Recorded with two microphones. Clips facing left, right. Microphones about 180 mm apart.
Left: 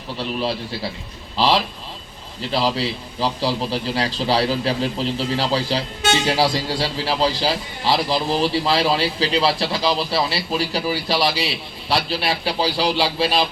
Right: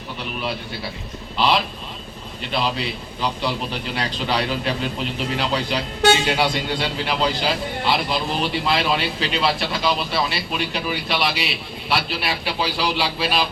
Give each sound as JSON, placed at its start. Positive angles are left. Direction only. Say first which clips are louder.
{"t": 2.5, "sound": "a man's voice", "louder": "left 3 dB", "side_deg": 35}